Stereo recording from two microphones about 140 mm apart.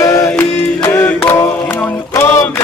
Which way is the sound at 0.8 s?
15° left (ahead or behind).